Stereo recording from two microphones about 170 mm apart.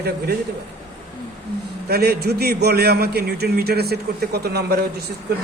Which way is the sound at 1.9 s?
70° right (ahead or behind).